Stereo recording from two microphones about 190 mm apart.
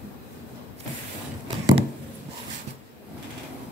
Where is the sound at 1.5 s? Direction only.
25° right (ahead or behind).